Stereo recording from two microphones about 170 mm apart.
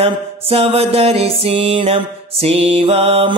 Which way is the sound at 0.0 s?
35° right (ahead or behind).